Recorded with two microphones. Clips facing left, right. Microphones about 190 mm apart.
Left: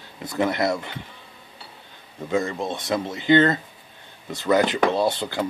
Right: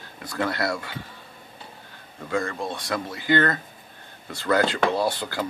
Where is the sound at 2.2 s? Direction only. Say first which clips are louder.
Left 3 dB; 20° left (ahead or behind).